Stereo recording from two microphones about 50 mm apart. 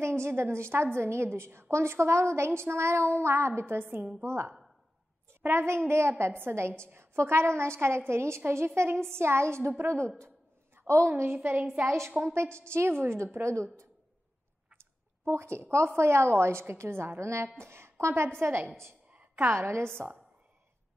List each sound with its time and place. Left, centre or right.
0.0 s a woman's voice: right
11.1 s a woman's voice: right
11.8 s a woman's voice: right
13.4 s speech: right
15.2 s a woman's voice: right
19.3 s a woman's voice: right